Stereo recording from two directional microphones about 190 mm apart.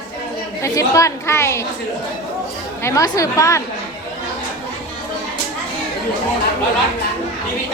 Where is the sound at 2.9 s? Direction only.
20° left (ahead or behind).